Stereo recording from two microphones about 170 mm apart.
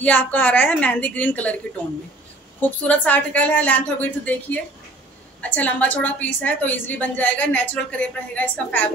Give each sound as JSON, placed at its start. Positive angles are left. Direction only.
{"t": 0.0, "sound": "a woman's voice", "side_deg": 10}
{"t": 2.9, "sound": "a woman's voice", "side_deg": 10}